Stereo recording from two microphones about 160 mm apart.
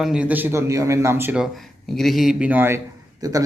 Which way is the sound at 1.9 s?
Centre (ahead or behind).